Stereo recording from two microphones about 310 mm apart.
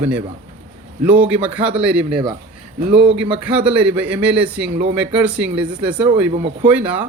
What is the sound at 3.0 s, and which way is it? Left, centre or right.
Speech, centre.